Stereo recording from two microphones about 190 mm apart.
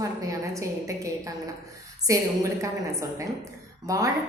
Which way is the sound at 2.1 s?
15° right (ahead or behind).